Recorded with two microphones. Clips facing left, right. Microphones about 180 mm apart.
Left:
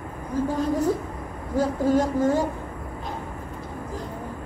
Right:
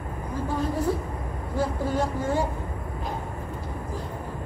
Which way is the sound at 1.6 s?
40° left (ahead or behind).